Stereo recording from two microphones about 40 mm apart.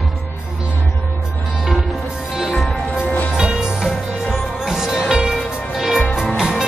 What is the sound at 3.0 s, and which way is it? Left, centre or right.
Music, left.